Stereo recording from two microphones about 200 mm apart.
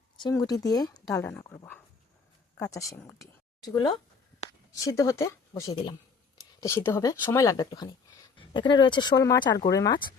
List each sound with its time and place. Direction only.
0.2 s speech: 20° left (ahead or behind)